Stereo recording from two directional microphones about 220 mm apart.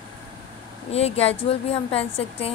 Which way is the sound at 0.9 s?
30° left (ahead or behind).